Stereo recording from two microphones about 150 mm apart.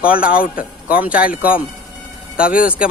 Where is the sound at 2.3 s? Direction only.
70° left (ahead or behind).